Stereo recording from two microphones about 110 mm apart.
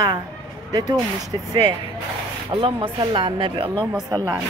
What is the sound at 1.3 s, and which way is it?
Speech, 35° right (ahead or behind).